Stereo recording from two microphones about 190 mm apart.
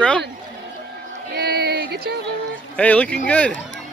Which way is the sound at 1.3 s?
55° right (ahead or behind).